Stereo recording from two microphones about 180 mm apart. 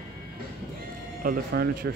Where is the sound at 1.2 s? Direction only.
60° right (ahead or behind).